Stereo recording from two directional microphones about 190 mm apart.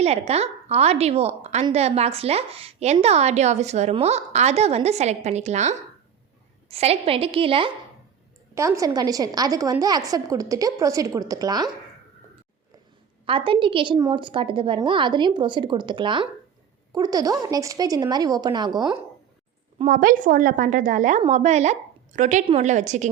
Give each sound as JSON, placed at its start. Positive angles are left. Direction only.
{"t": 0.0, "sound": "a woman's voice", "side_deg": -35}
{"t": 8.5, "sound": "a woman's voice", "side_deg": -15}
{"t": 13.2, "sound": "a woman's voice", "side_deg": -25}
{"t": 19.8, "sound": "a woman's voice", "side_deg": -45}